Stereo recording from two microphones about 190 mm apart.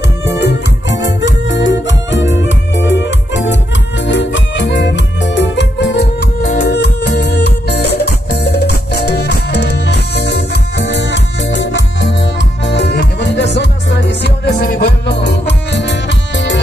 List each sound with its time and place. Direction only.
0.2 s music: 65° left (ahead or behind)